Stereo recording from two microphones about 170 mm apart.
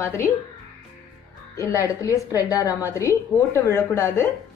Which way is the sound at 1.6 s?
20° left (ahead or behind).